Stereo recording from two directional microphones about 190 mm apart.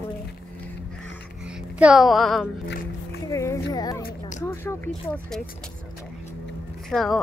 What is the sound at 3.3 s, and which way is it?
Speech, 15° left (ahead or behind).